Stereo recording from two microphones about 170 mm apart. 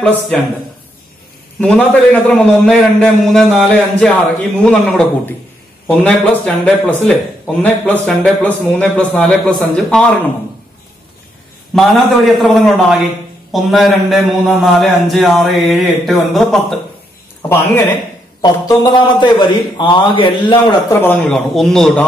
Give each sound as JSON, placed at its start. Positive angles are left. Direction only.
{"t": 0.0, "sound": "a man's voice", "side_deg": 10}
{"t": 1.6, "sound": "a man's voice", "side_deg": 5}
{"t": 11.7, "sound": "a man's voice", "side_deg": 0}
{"t": 17.5, "sound": "a man's voice", "side_deg": 15}
{"t": 18.4, "sound": "a man's voice", "side_deg": 25}
{"t": 21.0, "sound": "a man's voice", "side_deg": 10}